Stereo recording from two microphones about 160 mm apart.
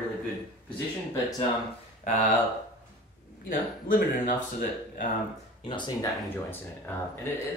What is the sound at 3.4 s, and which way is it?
Speech, 55° left (ahead or behind).